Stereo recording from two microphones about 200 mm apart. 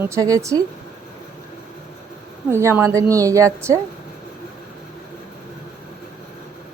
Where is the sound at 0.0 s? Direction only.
15° right (ahead or behind).